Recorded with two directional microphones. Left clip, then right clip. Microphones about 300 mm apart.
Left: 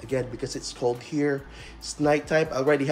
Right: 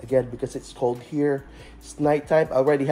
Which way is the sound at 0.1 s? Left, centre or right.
Centre.